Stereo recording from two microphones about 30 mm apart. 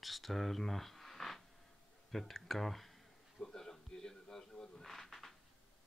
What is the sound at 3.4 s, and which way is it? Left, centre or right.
Music, left.